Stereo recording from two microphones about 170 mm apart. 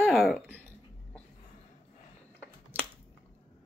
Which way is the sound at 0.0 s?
Centre (ahead or behind).